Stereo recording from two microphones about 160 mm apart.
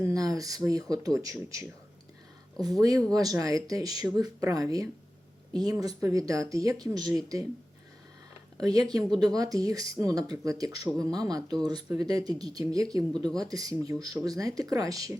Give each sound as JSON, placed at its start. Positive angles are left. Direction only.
{"t": 0.0, "sound": "speech", "side_deg": -20}
{"t": 8.5, "sound": "speech", "side_deg": -25}